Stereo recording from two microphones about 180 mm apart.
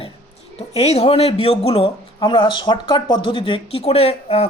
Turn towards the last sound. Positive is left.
turn(degrees=35)  # may be behind; listen again after turning